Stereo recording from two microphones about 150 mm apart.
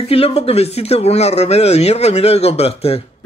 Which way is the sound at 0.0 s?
40° left (ahead or behind).